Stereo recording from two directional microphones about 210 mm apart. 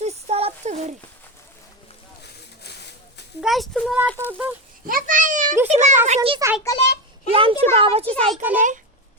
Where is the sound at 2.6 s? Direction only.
50° left (ahead or behind).